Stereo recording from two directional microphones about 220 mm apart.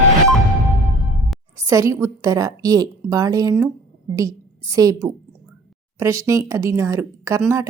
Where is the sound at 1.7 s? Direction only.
15° right (ahead or behind).